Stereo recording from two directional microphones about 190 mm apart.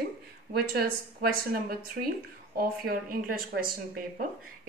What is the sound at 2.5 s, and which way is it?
Speech, 50° right (ahead or behind).